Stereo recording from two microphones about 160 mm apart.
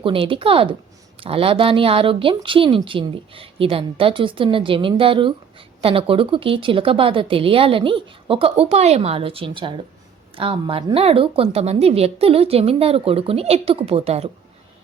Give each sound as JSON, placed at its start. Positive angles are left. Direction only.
{"t": 0.0, "sound": "a woman's voice", "side_deg": -35}